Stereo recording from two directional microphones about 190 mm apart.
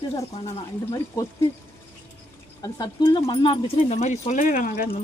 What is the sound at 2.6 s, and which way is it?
Speech, 20° left (ahead or behind).